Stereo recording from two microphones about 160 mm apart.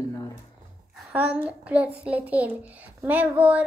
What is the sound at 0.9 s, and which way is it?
A child's voice, 5° right (ahead or behind).